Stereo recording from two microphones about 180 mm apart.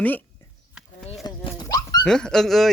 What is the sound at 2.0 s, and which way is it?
Speech, 5° left (ahead or behind).